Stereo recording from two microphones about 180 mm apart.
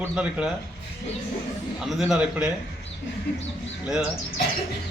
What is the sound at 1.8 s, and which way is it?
Speech, centre (ahead or behind).